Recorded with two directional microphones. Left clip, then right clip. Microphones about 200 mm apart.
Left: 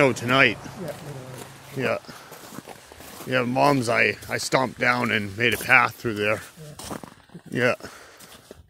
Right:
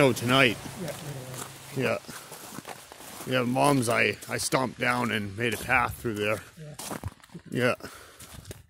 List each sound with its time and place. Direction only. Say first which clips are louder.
0.0 s speech: left 3 dB; 30° right (ahead or behind)
3.3 s speech: left 4 dB; 15° right (ahead or behind); by 6.1 s 5° left (ahead or behind)
6.1 s speech: left 3 dB; 10° right (ahead or behind)
6.8 s speech: left 2 dB; 25° left (ahead or behind)
7.5 s speech: left 4 dB; 20° right (ahead or behind)